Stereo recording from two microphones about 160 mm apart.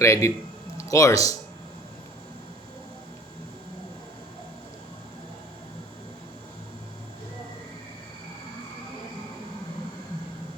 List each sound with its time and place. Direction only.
0.0 s a man's voice: 20° left (ahead or behind)